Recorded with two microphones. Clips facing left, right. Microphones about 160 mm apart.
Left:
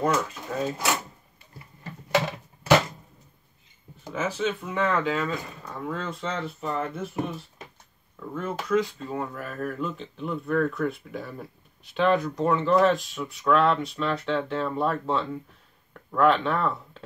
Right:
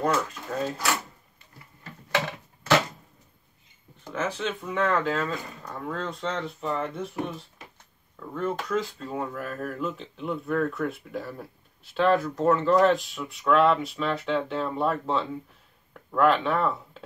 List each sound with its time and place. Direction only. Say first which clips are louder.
0.3 s speech: left 1 dB; 5° left (ahead or behind)
2.1 s a sound: left 3 dB; 15° left (ahead or behind)
4.1 s speech: left 2 dB; 5° left (ahead or behind)